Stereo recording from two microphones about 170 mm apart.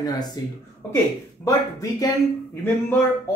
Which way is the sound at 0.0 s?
25° left (ahead or behind).